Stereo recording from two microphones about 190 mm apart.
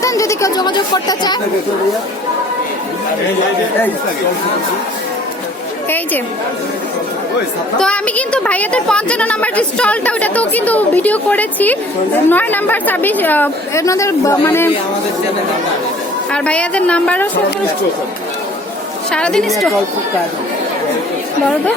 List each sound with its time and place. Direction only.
0.0 s speech: 15° left (ahead or behind)
7.8 s a woman's voice: 5° left (ahead or behind)
16.3 s a woman's voice: 5° left (ahead or behind)
19.1 s a woman's voice: 5° left (ahead or behind)